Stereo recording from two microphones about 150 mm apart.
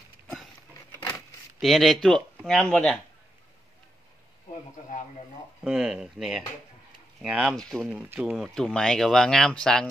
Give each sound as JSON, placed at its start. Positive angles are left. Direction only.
{"t": 0.9, "sound": "a sound", "side_deg": 15}
{"t": 1.6, "sound": "speech", "side_deg": 0}
{"t": 5.6, "sound": "speech", "side_deg": -5}
{"t": 8.1, "sound": "speech", "side_deg": -10}
{"t": 8.5, "sound": "speech", "side_deg": 5}